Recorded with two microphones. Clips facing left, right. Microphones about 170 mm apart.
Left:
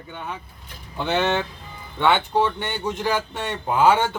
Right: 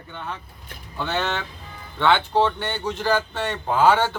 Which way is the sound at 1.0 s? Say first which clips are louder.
Left 4 dB; 15° left (ahead or behind).